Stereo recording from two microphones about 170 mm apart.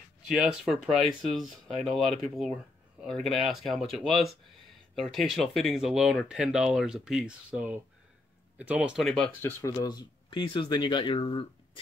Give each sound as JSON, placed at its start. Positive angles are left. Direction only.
{"t": 0.3, "sound": "speech", "side_deg": 0}